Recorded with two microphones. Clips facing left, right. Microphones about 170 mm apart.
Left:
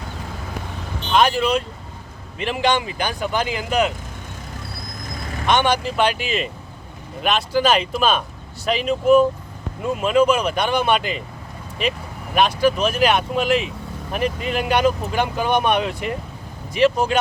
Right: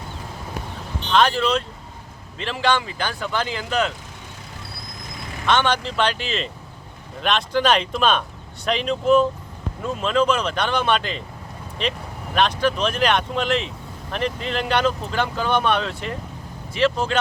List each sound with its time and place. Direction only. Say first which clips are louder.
1.1 s speech: left 1 dB; 10° left (ahead or behind)
5.5 s speech: left 2 dB; 15° left (ahead or behind)